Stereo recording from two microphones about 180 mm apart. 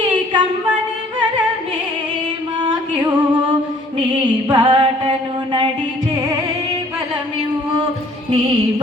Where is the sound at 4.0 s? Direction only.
25° right (ahead or behind).